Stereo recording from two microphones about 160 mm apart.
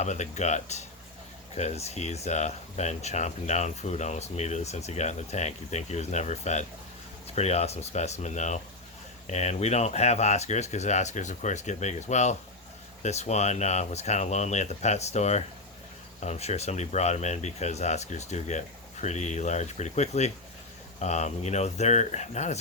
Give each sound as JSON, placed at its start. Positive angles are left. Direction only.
{"t": 0.0, "sound": "speech", "side_deg": 45}